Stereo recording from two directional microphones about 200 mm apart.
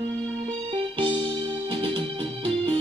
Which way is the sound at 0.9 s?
25° right (ahead or behind).